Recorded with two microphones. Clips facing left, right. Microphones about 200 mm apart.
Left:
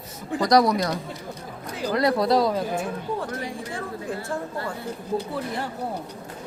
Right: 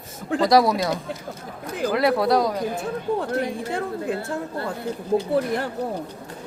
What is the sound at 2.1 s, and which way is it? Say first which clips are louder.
Speech: even; centre (ahead or behind).